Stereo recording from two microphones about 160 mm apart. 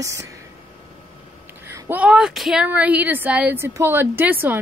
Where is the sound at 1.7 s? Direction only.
10° right (ahead or behind).